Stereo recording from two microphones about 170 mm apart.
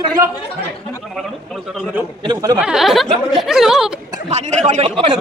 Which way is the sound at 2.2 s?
25° right (ahead or behind).